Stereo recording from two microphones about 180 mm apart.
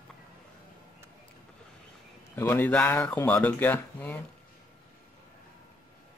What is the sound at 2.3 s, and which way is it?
Speech, 10° left (ahead or behind).